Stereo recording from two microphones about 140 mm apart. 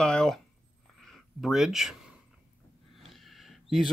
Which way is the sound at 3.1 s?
Centre (ahead or behind).